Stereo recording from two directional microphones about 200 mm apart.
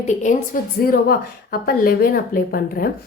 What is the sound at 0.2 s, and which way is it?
A woman's voice, 40° left (ahead or behind).